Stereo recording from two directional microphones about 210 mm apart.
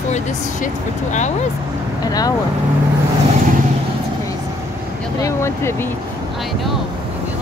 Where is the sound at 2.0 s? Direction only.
20° left (ahead or behind).